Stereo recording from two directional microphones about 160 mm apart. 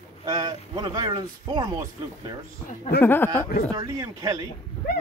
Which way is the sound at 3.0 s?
15° left (ahead or behind).